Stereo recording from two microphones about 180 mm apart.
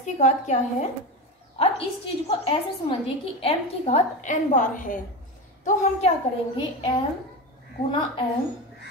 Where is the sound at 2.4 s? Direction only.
30° left (ahead or behind); by 5.0 s 45° left (ahead or behind).